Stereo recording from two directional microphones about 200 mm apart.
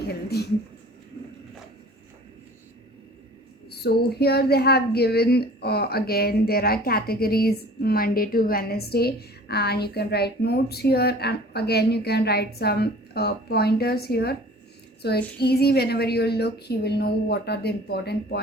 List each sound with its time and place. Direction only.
0.3 s speech: 55° left (ahead or behind)
3.7 s speech: 55° left (ahead or behind)
15.4 s speech: 55° left (ahead or behind)